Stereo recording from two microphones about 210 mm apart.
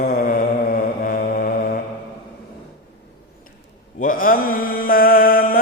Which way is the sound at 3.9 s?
40° left (ahead or behind).